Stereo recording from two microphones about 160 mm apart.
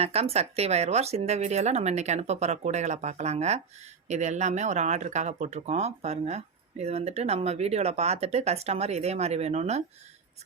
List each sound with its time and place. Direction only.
0.0 s speech: 40° right (ahead or behind)